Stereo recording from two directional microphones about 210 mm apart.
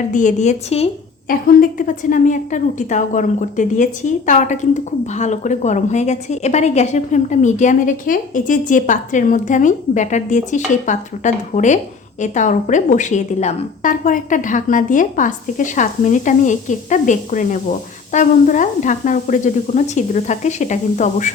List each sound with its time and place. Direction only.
0.1 s a woman's voice: 35° left (ahead or behind)
1.3 s a woman's voice: 40° left (ahead or behind)